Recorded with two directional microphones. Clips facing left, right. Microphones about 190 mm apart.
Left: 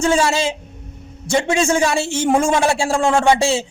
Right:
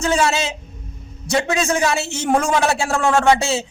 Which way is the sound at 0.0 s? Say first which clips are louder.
Left 2 dB; 30° left (ahead or behind).